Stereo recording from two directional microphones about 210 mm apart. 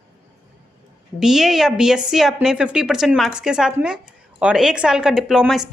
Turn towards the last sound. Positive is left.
turn(degrees=-5)  # may be behind; listen again after turning